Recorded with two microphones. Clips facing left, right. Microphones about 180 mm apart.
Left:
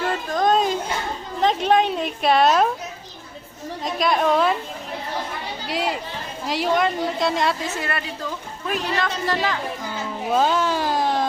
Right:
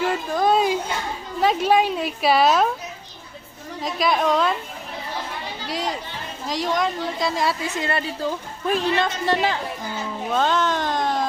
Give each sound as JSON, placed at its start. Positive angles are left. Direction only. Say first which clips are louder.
{"t": 0.0, "sound": "a sound", "louder": "even", "side_deg": -10}
{"t": 1.4, "sound": "a woman's voice", "louder": "even", "side_deg": -5}
{"t": 3.8, "sound": "a woman's voice", "louder": "left 1 dB", "side_deg": 0}
{"t": 5.6, "sound": "a woman's voice", "louder": "left 2 dB", "side_deg": 5}
{"t": 7.8, "sound": "a woman's voice", "louder": "right 3 dB", "side_deg": -25}
{"t": 10.3, "sound": "speech", "louder": "left 1 dB", "side_deg": 5}